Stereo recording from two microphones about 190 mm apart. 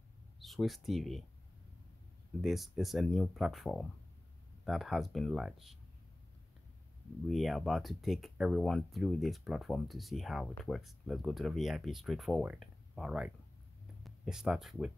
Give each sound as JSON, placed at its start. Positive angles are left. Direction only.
{"t": 0.4, "sound": "speech", "side_deg": 0}
{"t": 2.4, "sound": "speech", "side_deg": 0}
{"t": 7.2, "sound": "speech", "side_deg": 0}